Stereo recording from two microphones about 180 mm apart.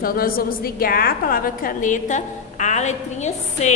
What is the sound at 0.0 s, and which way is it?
A woman's voice, 55° left (ahead or behind).